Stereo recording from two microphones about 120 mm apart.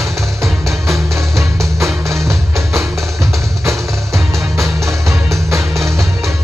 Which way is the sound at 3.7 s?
25° right (ahead or behind).